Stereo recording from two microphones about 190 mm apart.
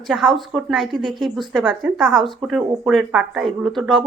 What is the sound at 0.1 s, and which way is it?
A woman's voice, centre (ahead or behind).